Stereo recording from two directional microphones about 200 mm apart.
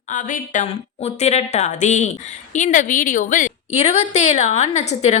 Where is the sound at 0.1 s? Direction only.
40° left (ahead or behind).